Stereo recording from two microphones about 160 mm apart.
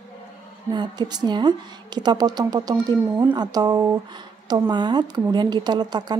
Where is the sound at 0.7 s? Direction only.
25° right (ahead or behind).